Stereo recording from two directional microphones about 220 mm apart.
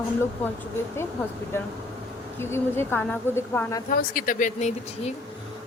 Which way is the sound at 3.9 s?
40° left (ahead or behind).